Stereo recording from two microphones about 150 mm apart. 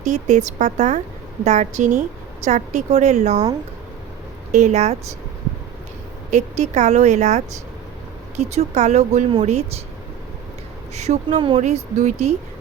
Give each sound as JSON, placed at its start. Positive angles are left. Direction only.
{"t": 0.0, "sound": "a woman's voice", "side_deg": -50}
{"t": 4.5, "sound": "a woman's voice", "side_deg": -50}
{"t": 6.3, "sound": "a woman's voice", "side_deg": -50}
{"t": 10.9, "sound": "a woman's voice", "side_deg": -50}
{"t": 11.6, "sound": "a woman's voice", "side_deg": -50}